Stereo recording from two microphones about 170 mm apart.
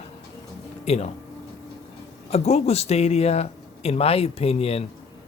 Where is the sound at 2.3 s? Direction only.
40° left (ahead or behind).